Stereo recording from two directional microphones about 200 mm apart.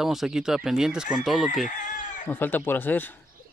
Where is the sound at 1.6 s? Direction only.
40° left (ahead or behind).